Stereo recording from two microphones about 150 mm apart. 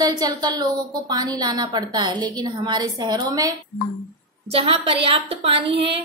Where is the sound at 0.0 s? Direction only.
25° right (ahead or behind).